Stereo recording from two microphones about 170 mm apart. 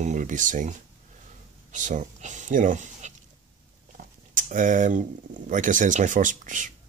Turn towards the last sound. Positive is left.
turn(degrees=-50)  # may be behind; listen again after turning